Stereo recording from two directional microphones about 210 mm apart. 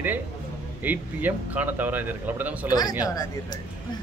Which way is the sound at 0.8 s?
10° right (ahead or behind).